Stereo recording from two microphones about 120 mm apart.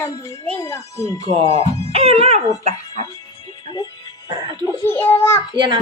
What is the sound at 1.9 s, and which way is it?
Speech, 60° right (ahead or behind).